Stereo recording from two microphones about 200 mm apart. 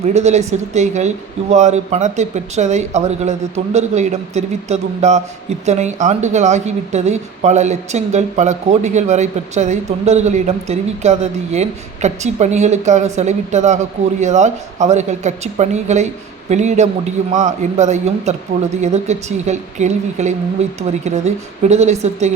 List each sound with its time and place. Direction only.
0.0 s a woman's voice: 35° right (ahead or behind)